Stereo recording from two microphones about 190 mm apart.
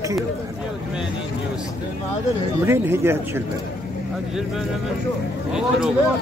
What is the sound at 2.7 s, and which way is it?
Speech, 10° right (ahead or behind).